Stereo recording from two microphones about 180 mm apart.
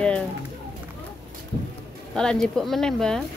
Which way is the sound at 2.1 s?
5° left (ahead or behind).